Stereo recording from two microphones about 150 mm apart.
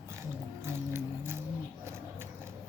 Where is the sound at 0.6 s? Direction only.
15° right (ahead or behind).